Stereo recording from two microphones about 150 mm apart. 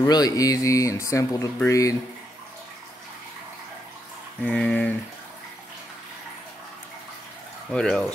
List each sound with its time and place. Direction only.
0.0 s speech: 25° left (ahead or behind)
4.4 s a sound: 5° left (ahead or behind)
7.7 s speech: 5° left (ahead or behind)